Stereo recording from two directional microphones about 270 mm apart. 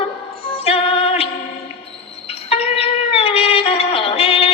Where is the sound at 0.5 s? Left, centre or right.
Left.